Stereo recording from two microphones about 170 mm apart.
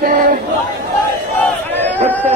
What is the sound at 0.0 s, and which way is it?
Chatter, 55° right (ahead or behind).